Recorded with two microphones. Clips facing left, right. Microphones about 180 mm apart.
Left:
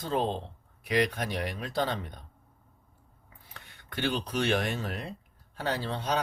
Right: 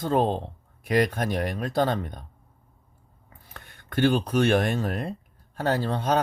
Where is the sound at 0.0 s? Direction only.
50° right (ahead or behind).